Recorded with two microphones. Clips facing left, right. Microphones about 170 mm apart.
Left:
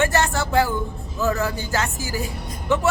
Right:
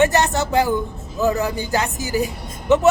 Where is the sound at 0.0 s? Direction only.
20° right (ahead or behind).